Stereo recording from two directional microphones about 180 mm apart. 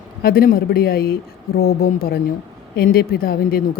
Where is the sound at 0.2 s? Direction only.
55° left (ahead or behind).